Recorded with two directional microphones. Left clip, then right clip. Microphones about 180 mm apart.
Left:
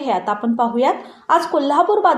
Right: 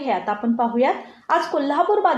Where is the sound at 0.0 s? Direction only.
35° left (ahead or behind).